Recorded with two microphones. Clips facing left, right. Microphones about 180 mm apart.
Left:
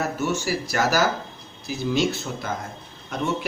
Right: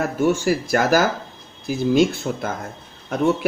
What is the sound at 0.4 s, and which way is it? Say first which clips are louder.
Speech: right 5 dB; 50° right (ahead or behind).